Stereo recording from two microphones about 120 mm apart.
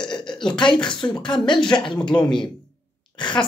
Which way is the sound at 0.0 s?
40° left (ahead or behind).